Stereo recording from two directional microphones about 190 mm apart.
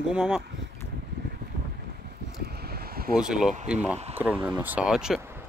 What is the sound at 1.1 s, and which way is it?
Vehicle, 65° right (ahead or behind).